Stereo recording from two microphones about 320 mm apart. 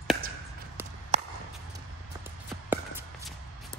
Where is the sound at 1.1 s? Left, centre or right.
Centre.